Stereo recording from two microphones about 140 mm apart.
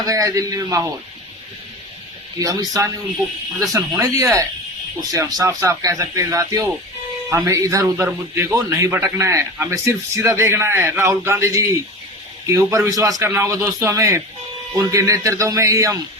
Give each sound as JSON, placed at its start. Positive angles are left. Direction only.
{"t": 0.0, "sound": "a man's voice", "side_deg": -25}
{"t": 2.4, "sound": "a man's voice", "side_deg": -25}